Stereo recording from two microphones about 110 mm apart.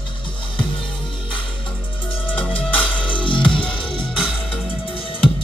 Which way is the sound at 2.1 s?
55° left (ahead or behind).